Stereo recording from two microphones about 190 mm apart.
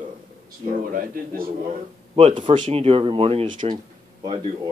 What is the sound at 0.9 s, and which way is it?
Speech, 50° right (ahead or behind).